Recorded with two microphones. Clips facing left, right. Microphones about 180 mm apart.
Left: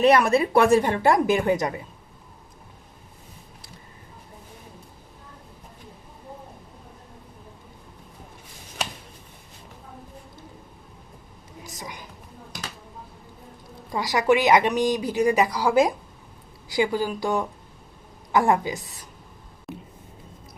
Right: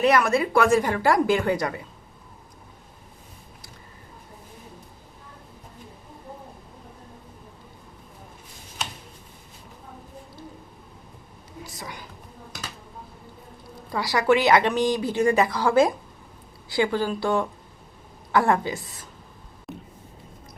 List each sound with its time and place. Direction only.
0.0 s a woman's voice: 30° left (ahead or behind)
11.6 s a sound: 20° left (ahead or behind)
13.9 s speech: 20° left (ahead or behind)
19.7 s vehicle: centre (ahead or behind)